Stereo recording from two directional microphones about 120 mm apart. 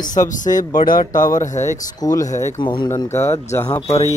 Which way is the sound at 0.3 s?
90° left.